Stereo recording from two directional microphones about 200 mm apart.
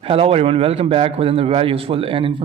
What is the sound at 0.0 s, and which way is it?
Speech, 30° right (ahead or behind).